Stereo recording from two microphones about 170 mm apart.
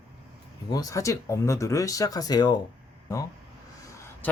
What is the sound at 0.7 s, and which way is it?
Speech, 20° left (ahead or behind).